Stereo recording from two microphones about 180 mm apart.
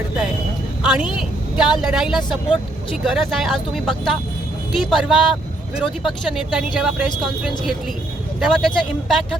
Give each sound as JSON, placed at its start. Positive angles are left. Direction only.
{"t": 0.8, "sound": "vehicle", "side_deg": -5}
{"t": 1.8, "sound": "speech", "side_deg": -5}